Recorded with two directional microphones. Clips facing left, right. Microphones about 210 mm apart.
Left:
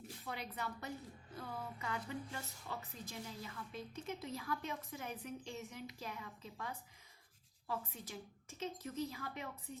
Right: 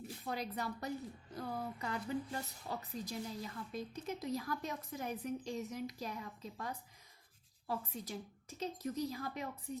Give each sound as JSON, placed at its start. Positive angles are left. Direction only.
{"t": 0.3, "sound": "a woman's voice", "side_deg": -40}